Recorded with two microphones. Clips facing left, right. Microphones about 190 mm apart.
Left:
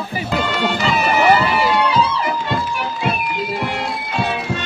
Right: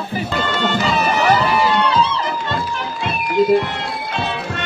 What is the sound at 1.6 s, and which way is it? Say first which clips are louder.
Music: even; 15° left (ahead or behind).